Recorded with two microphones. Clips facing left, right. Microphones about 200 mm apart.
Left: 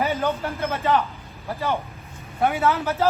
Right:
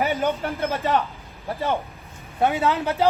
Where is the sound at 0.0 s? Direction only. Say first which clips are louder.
Right 1 dB; 15° right (ahead or behind).